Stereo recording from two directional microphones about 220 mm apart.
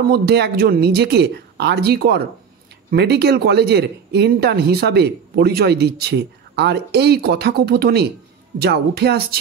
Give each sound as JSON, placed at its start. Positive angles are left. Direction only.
{"t": 0.0, "sound": "speech", "side_deg": -45}